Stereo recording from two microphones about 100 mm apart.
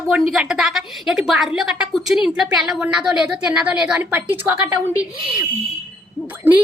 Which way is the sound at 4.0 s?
20° right (ahead or behind).